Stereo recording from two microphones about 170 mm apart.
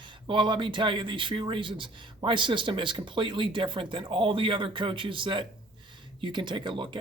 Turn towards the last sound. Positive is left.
turn(degrees=-30)  # may be behind; listen again after turning